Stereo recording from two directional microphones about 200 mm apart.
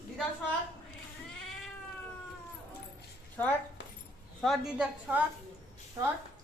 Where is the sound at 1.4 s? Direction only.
Centre (ahead or behind).